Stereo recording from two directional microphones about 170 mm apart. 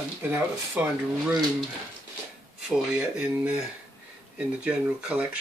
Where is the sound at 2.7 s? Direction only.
5° right (ahead or behind).